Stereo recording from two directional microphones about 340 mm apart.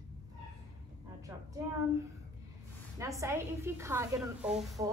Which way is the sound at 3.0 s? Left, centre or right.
Centre.